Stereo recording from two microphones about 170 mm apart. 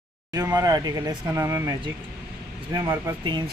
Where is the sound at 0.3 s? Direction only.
20° right (ahead or behind).